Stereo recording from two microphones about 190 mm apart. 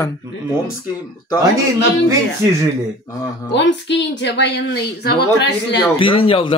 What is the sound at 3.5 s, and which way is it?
A woman's voice, 65° left (ahead or behind).